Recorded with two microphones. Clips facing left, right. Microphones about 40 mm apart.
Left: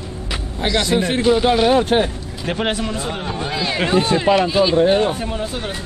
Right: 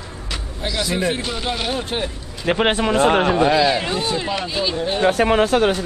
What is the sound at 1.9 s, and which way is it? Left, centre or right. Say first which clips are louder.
Speech: left 8 dB; left.